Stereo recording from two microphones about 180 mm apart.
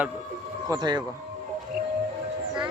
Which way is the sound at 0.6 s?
20° right (ahead or behind).